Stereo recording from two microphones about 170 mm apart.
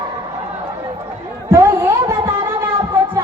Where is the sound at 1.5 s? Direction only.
15° right (ahead or behind).